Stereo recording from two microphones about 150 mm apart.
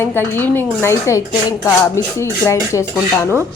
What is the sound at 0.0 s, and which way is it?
Speech, 15° left (ahead or behind).